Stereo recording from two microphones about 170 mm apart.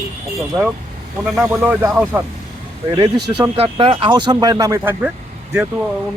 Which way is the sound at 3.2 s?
25° right (ahead or behind).